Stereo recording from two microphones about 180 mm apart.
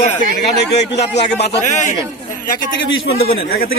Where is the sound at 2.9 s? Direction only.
60° left (ahead or behind).